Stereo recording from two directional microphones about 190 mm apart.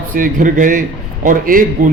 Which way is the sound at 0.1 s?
45° right (ahead or behind).